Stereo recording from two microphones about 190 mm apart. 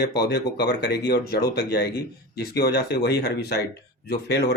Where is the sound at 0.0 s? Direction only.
60° left (ahead or behind).